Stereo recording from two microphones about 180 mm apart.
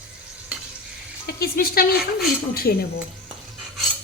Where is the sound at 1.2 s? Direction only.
60° left (ahead or behind).